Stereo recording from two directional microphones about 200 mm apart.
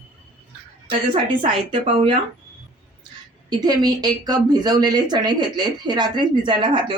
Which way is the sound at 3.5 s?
20° right (ahead or behind).